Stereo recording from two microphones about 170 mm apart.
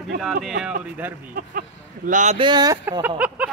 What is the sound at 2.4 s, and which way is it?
Speech, 25° right (ahead or behind).